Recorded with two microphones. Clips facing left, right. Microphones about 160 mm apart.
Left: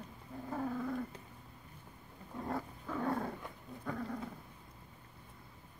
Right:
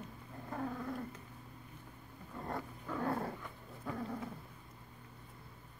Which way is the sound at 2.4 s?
Centre (ahead or behind).